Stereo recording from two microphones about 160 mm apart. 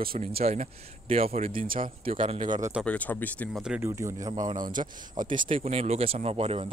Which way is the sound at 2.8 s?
10° left (ahead or behind).